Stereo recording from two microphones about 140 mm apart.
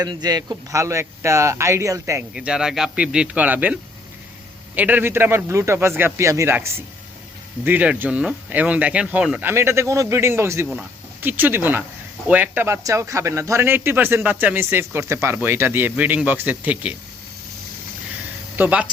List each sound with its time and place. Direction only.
0.0 s speech: 30° right (ahead or behind)
2.3 s speech: 5° right (ahead or behind)
18.5 s speech: 10° right (ahead or behind)